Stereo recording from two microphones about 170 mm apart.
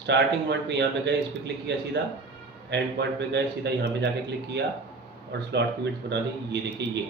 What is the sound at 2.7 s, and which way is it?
A man's voice, 85° right.